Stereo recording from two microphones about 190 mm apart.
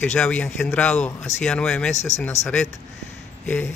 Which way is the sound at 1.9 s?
35° left (ahead or behind).